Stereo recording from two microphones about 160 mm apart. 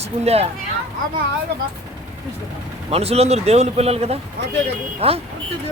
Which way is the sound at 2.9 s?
40° right (ahead or behind).